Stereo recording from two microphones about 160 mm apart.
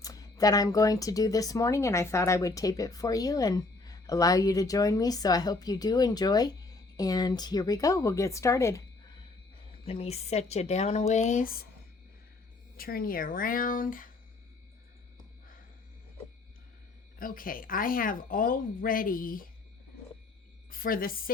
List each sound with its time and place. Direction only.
0.0 s speech: 20° left (ahead or behind)
9.8 s speech: 40° left (ahead or behind); by 11.7 s 65° left (ahead or behind)
12.7 s speech: 65° left (ahead or behind)
17.2 s speech: 60° left (ahead or behind)
20.7 s a woman's voice: 60° left (ahead or behind)